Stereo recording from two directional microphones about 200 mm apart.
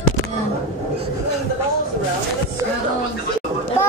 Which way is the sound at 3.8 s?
15° left (ahead or behind).